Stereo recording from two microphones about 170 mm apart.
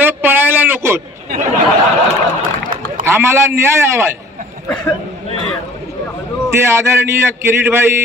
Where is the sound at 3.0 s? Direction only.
15° right (ahead or behind).